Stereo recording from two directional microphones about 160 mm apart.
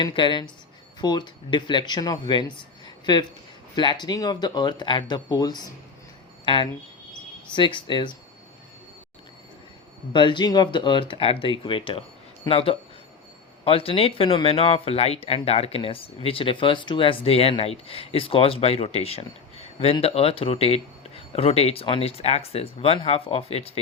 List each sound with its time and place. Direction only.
0.0 s speech: 30° left (ahead or behind)
10.1 s speech: 30° left (ahead or behind)